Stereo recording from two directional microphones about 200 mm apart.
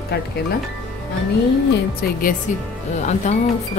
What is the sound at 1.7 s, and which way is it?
Speech, 45° left (ahead or behind).